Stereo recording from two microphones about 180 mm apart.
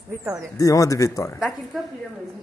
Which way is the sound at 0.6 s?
20° left (ahead or behind).